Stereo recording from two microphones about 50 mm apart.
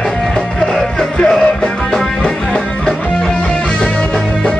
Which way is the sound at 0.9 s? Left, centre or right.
Centre.